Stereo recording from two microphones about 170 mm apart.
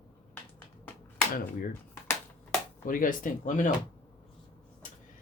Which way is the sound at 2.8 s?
55° left (ahead or behind).